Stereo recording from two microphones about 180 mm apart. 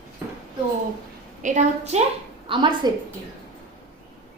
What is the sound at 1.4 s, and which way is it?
Speech, 40° right (ahead or behind).